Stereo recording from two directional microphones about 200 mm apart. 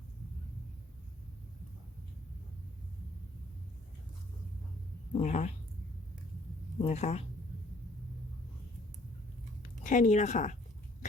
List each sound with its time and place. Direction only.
5.1 s speech: 35° left (ahead or behind)
6.7 s speech: 30° left (ahead or behind)
9.6 s speech: 40° left (ahead or behind)